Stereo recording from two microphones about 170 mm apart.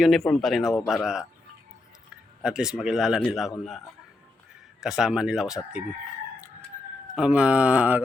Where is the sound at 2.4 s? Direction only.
5° right (ahead or behind).